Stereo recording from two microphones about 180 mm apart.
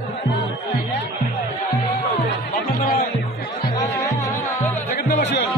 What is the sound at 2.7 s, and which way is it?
Music, 50° left (ahead or behind).